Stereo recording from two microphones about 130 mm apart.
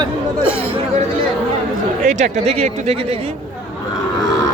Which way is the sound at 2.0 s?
65° right (ahead or behind).